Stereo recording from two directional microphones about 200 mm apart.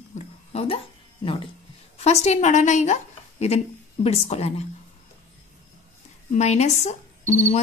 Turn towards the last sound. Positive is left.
turn(degrees=35)  # may be behind; listen again after turning